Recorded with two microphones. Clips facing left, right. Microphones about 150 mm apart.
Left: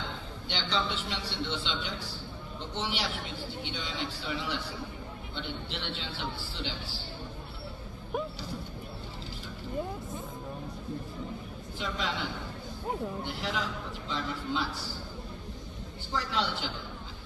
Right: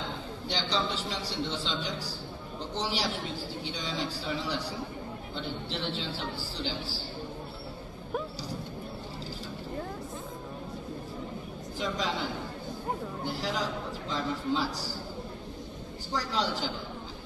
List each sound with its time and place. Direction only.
0.5 s a man's voice: 35° right (ahead or behind)
13.2 s a man's voice: 35° right (ahead or behind)
16.2 s a man's voice: 40° right (ahead or behind)